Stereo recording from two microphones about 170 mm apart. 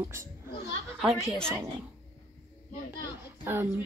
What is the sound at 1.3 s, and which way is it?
Speech, 5° left (ahead or behind).